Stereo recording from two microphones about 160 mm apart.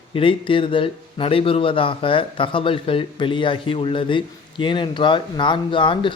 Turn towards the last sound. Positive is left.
turn(degrees=30)  # may be behind; listen again after turning